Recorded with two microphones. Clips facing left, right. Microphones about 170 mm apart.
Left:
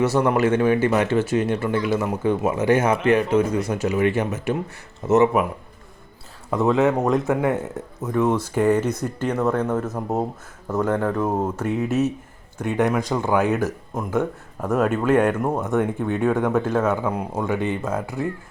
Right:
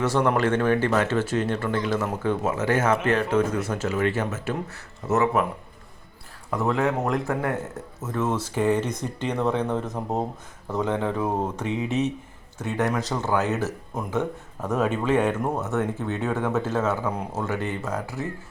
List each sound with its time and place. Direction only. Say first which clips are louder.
0.0 s speech: left 3 dB; 10° left (ahead or behind)
6.5 s speech: left 5 dB; 20° left (ahead or behind)